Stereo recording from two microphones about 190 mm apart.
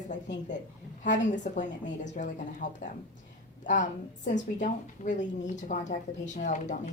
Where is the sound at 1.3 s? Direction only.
40° left (ahead or behind).